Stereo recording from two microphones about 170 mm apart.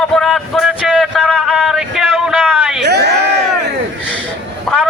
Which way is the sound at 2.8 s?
75° right (ahead or behind).